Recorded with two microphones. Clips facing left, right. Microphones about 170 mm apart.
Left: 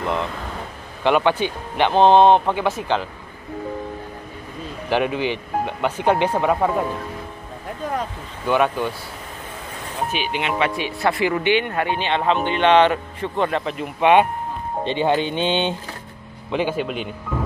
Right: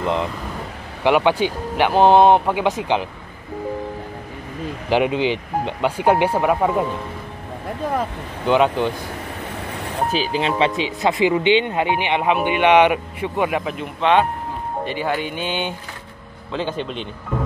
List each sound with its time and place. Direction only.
0.0 s speech: 15° right (ahead or behind)
4.8 s speech: 15° right (ahead or behind)
8.5 s speech: 20° right (ahead or behind)
10.1 s speech: 35° right (ahead or behind)
10.8 s speech: 20° right (ahead or behind)
14.0 s speech: 10° left (ahead or behind)
14.9 s speech: 25° left (ahead or behind)
16.5 s speech: 10° left (ahead or behind)